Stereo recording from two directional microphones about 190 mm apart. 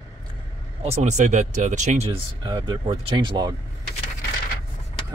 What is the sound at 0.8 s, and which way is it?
Speech, 35° right (ahead or behind).